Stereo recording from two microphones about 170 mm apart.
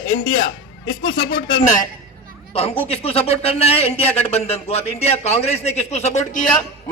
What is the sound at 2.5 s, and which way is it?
A man's voice, 35° left (ahead or behind).